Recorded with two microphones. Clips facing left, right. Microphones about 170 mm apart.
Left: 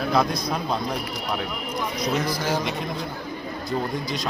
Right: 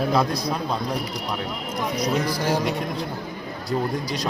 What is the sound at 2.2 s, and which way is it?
Speech, 30° right (ahead or behind).